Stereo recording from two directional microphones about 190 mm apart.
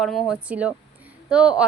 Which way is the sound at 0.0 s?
Centre (ahead or behind).